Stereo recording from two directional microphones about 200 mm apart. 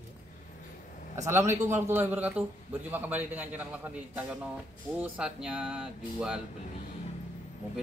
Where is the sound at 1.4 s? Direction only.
35° right (ahead or behind).